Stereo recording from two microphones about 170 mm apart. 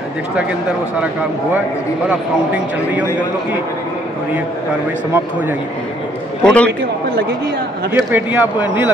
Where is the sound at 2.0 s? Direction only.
10° right (ahead or behind).